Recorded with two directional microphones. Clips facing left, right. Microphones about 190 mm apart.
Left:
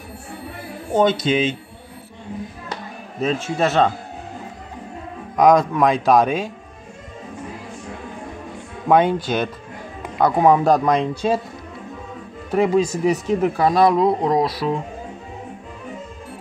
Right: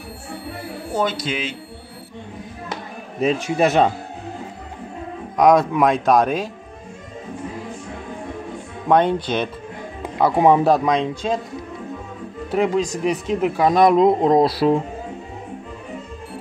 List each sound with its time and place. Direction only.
0.9 s speech: 25° left (ahead or behind)
2.7 s music: 10° right (ahead or behind)
5.4 s speech: centre (ahead or behind)
8.8 s speech: 5° left (ahead or behind)
10.1 s speech: 5° right (ahead or behind)
12.4 s speech: 5° left (ahead or behind)
13.6 s speech: 20° right (ahead or behind)